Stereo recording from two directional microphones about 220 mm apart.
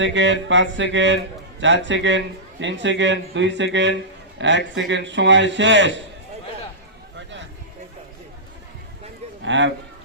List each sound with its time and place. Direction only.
0.0 s a man's voice: 55° right (ahead or behind)
9.4 s speech: 55° right (ahead or behind)